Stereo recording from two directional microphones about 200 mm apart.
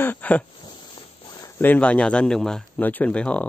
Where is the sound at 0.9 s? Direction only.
20° left (ahead or behind).